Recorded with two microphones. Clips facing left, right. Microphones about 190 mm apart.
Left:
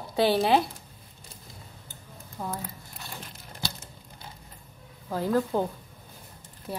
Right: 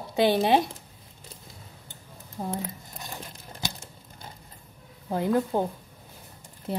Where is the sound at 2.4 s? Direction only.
30° right (ahead or behind).